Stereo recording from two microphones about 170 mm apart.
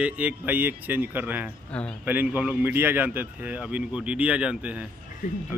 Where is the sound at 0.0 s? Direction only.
10° right (ahead or behind).